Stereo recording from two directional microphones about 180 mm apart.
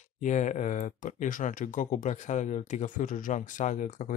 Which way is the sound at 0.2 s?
45° left (ahead or behind).